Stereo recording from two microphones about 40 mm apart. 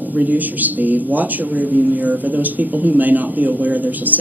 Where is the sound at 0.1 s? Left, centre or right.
Right.